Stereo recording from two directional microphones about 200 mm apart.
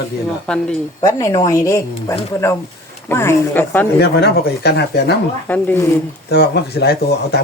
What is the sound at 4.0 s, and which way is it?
Speech, 55° left (ahead or behind).